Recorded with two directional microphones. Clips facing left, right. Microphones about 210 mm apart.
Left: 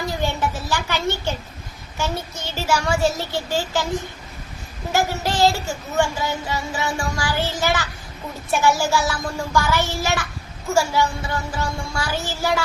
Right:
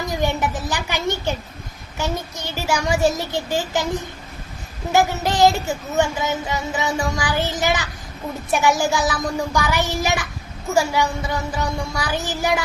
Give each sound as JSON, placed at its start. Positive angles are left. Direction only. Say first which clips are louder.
{"t": 0.1, "sound": "a child's voice", "louder": "right 5 dB", "side_deg": -15}
{"t": 4.9, "sound": "a child's voice", "louder": "right 3 dB", "side_deg": -20}